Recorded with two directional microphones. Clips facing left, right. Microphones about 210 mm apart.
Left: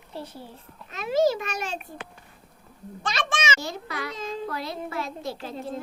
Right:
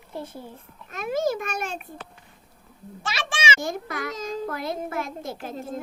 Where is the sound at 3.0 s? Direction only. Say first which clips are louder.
Left 2 dB; 10° right (ahead or behind).